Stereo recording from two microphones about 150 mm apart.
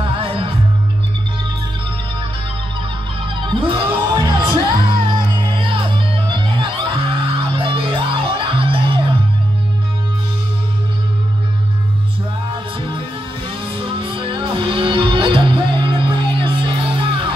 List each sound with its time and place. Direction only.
0.0 s music: 35° right (ahead or behind)
3.3 s music: 35° right (ahead or behind)
13.7 s music: 35° right (ahead or behind)